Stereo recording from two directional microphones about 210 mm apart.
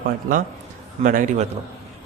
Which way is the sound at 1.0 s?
40° right (ahead or behind).